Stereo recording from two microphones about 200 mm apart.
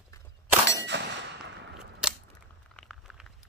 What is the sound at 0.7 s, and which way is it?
Clang, 60° right (ahead or behind).